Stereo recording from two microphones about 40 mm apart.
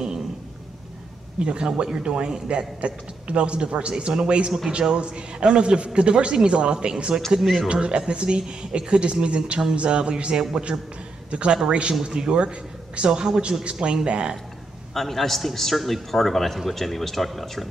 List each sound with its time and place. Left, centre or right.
1.4 s a man's voice: right
15.0 s a man's voice: centre